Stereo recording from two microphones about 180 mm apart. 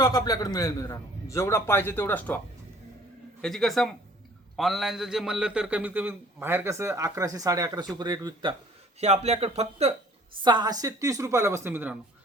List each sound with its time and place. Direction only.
0.0 s a man's voice: 20° left (ahead or behind)
3.4 s a man's voice: centre (ahead or behind); by 8.5 s 25° right (ahead or behind)
9.0 s speech: 35° right (ahead or behind)
10.4 s a man's voice: 25° right (ahead or behind)